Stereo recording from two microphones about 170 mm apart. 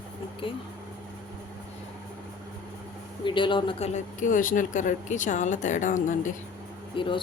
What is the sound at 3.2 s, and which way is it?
Speech, 30° left (ahead or behind).